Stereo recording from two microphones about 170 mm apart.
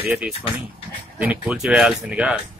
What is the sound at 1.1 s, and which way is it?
Speech, 10° right (ahead or behind).